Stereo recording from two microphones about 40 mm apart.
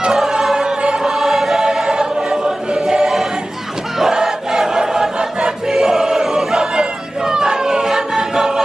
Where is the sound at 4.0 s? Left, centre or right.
Centre.